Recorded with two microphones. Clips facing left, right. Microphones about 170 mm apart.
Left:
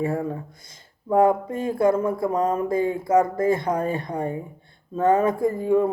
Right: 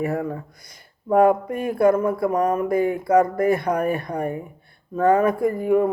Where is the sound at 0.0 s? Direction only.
25° left (ahead or behind).